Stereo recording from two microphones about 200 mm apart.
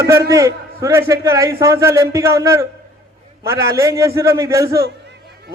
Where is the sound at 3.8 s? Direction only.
15° right (ahead or behind).